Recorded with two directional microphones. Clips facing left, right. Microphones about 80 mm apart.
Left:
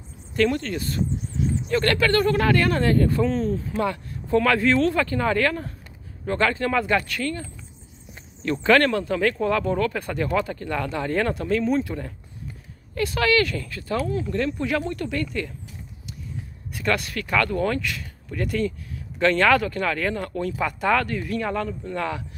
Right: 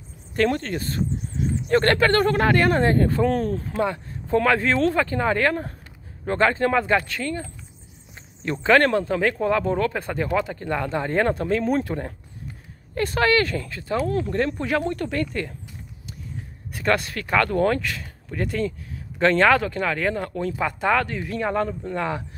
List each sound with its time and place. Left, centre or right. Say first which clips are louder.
0.4 s speech: even; right
3.3 s speech: right 1 dB; right
3.7 s speech: right 1 dB; right
4.9 s speech: even; right
14.0 s speech: right 3 dB; right
14.3 s speech: right 1 dB; right
16.7 s speech: right 2 dB; right